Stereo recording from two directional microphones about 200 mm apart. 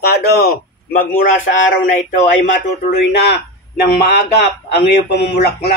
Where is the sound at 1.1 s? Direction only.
40° left (ahead or behind).